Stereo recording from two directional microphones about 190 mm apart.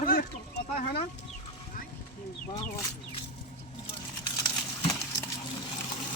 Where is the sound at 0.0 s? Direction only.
50° left (ahead or behind).